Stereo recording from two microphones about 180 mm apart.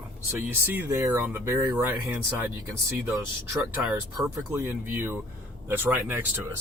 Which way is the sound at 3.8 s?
Centre (ahead or behind).